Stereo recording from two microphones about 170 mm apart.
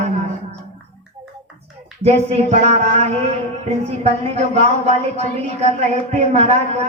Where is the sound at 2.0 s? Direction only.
40° right (ahead or behind).